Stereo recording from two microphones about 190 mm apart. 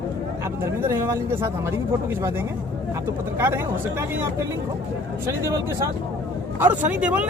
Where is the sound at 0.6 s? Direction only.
10° right (ahead or behind).